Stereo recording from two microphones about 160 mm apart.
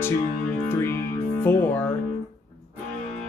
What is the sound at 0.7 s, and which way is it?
Music, 15° left (ahead or behind).